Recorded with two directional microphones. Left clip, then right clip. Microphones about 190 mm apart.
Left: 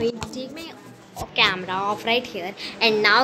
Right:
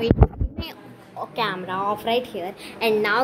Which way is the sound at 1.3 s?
15° right (ahead or behind).